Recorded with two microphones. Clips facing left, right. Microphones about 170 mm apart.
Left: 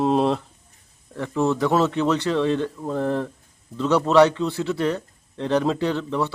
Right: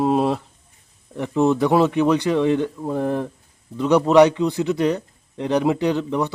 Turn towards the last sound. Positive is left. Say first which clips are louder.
# right 3 dB
turn(degrees=-15)  # may be behind; listen again after turning